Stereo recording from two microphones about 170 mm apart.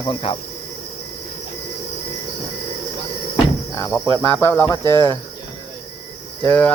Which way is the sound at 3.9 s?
10° left (ahead or behind).